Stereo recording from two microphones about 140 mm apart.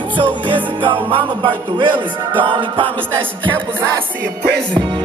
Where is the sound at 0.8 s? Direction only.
35° right (ahead or behind).